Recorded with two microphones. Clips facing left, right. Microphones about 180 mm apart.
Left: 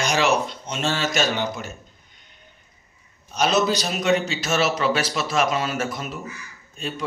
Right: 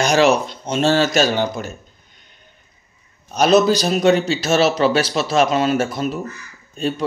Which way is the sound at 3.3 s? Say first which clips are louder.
Right 7 dB; 40° right (ahead or behind).